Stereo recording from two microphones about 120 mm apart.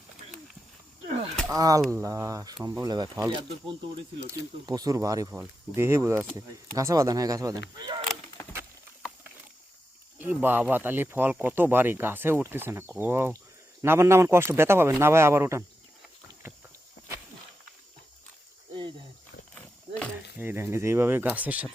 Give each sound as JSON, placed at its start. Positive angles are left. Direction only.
{"t": 1.5, "sound": "speech", "side_deg": -30}
{"t": 10.2, "sound": "speech", "side_deg": -15}
{"t": 19.5, "sound": "a sound", "side_deg": 10}
{"t": 20.4, "sound": "speech", "side_deg": -20}